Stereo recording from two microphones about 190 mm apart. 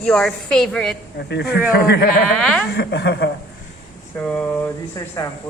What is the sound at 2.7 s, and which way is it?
Speech, 60° left (ahead or behind).